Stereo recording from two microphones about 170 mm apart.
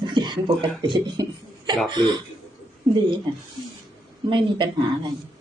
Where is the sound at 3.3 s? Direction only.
25° right (ahead or behind).